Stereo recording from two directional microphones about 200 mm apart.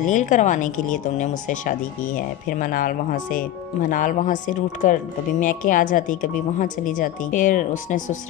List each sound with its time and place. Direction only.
0.0 s speech: 40° left (ahead or behind)